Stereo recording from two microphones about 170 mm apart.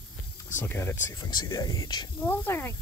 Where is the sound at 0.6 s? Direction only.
15° left (ahead or behind).